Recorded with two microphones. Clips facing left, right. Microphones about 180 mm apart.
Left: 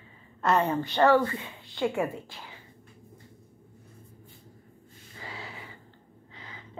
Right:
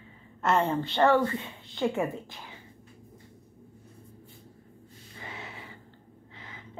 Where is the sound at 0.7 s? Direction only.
25° right (ahead or behind).